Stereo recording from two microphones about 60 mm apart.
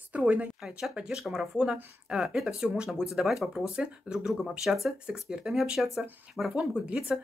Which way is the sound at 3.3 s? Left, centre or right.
Centre.